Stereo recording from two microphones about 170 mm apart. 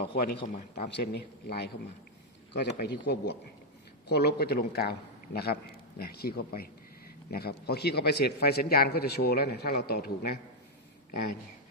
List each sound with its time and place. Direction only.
0.0 s a man's voice: 70° left (ahead or behind)
0.4 s speech: 55° left (ahead or behind)
0.9 s a man's voice: 75° left (ahead or behind)